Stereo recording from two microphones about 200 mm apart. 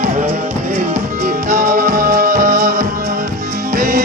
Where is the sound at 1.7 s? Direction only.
45° right (ahead or behind).